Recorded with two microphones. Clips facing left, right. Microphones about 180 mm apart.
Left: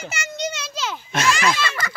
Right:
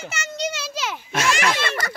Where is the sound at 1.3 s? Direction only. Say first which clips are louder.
Left 2 dB; 65° right (ahead or behind).